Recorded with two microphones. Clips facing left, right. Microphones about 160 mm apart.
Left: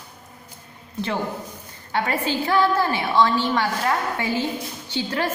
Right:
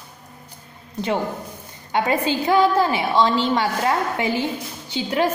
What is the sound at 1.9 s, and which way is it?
A woman's voice, 20° right (ahead or behind).